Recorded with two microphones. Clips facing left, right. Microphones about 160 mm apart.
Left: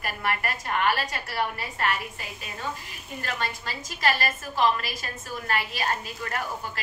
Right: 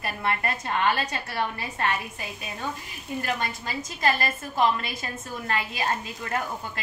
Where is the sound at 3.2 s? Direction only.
20° right (ahead or behind).